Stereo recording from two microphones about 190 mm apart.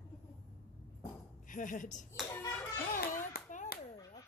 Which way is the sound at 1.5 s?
45° left (ahead or behind).